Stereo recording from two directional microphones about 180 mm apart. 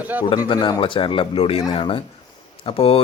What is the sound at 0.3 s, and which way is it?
Speech, 25° left (ahead or behind).